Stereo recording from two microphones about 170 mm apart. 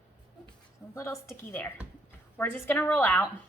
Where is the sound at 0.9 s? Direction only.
15° left (ahead or behind).